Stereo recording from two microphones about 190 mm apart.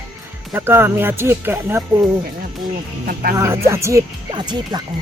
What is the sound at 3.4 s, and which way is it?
Speech, 15° right (ahead or behind).